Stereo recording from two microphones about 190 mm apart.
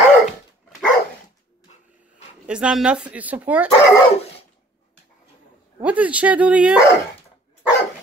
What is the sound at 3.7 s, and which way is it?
Speech, 30° left (ahead or behind).